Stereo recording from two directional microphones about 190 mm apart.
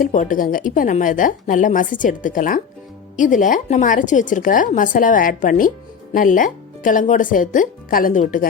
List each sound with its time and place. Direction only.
0.0 s a woman's voice: 45° left (ahead or behind)